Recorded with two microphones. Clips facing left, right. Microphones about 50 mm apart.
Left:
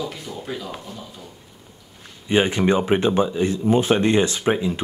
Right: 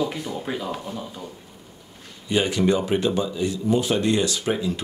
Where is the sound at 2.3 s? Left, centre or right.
Left.